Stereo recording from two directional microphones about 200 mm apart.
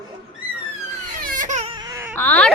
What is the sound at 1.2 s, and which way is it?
Baby cry, 40° right (ahead or behind).